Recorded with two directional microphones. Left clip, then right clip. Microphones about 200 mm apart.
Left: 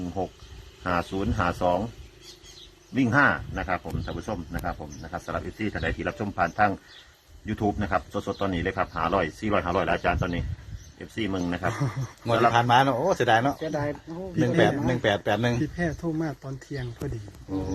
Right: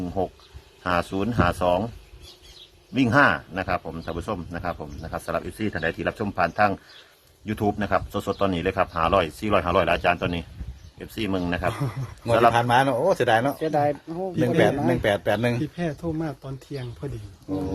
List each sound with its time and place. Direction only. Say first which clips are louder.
0.2 s speech: right 5 dB; 30° right (ahead or behind)
2.9 s speech: right 3 dB; 30° right (ahead or behind)
11.7 s a man's voice: even; 5° left (ahead or behind)
13.6 s speech: right 7 dB; 55° right (ahead or behind)
14.3 s a man's voice: right 2 dB; centre (ahead or behind)